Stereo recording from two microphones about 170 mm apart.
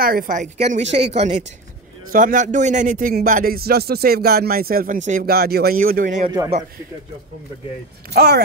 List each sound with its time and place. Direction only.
0.0 s a woman's voice: 55° right (ahead or behind); by 1.4 s 40° right (ahead or behind)
2.1 s speech: 50° right (ahead or behind)
8.1 s speech: 70° right (ahead or behind)